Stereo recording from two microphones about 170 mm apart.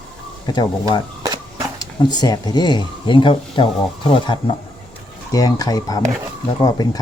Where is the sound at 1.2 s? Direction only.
20° right (ahead or behind).